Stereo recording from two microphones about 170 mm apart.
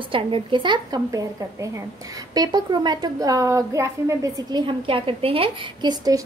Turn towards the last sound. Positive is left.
turn(degrees=-25)  # may be behind; listen again after turning